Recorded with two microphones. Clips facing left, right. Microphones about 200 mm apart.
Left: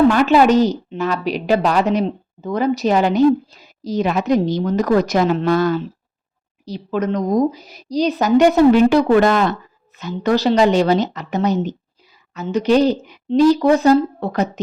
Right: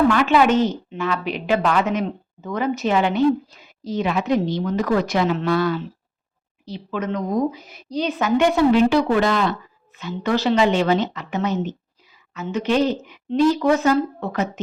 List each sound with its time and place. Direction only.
0.1 s a woman's voice: 40° left (ahead or behind)